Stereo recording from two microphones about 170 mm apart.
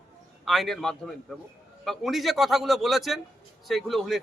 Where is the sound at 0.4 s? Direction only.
Centre (ahead or behind).